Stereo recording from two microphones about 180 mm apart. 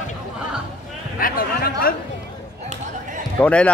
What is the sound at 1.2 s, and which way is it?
Speech, 55° left (ahead or behind).